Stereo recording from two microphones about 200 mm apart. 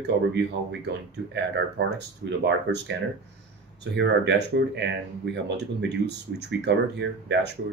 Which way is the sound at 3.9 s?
60° right (ahead or behind).